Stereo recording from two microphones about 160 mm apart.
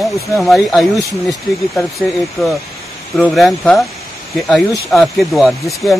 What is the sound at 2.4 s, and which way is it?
Speech, centre (ahead or behind).